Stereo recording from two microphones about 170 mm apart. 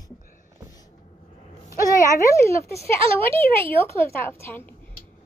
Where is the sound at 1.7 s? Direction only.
20° left (ahead or behind).